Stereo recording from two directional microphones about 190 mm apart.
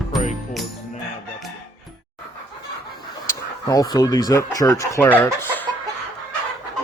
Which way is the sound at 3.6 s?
20° left (ahead or behind).